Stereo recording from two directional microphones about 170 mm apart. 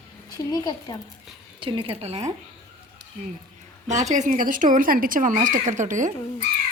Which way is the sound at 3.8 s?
45° right (ahead or behind).